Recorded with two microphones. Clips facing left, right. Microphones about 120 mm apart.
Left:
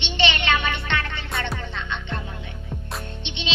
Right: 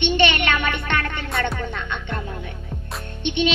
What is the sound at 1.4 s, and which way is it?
Music, 50° right (ahead or behind).